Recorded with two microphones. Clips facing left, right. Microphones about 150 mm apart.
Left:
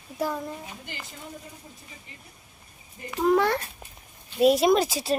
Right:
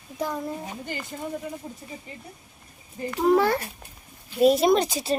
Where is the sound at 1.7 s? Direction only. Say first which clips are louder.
Right 9 dB; 50° right (ahead or behind).